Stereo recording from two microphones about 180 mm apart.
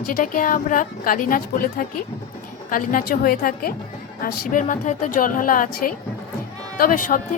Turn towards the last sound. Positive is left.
turn(degrees=45)  # may be behind; listen again after turning